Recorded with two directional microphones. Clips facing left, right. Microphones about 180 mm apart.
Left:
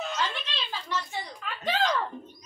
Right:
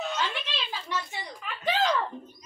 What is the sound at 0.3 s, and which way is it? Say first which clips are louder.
Speech: right 1 dB; 15° right (ahead or behind).